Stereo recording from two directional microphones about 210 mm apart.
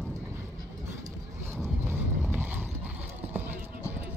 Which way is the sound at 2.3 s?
10° right (ahead or behind).